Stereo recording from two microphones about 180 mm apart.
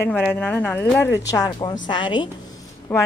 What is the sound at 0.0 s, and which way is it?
A woman's voice, 10° left (ahead or behind).